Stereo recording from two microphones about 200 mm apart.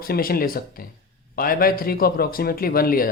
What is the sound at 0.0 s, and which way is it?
Speech, 45° left (ahead or behind).